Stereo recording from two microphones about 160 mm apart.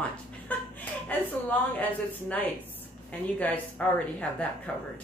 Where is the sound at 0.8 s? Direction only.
10° left (ahead or behind).